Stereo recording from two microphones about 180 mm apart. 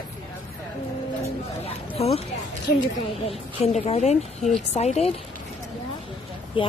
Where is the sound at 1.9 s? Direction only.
35° left (ahead or behind).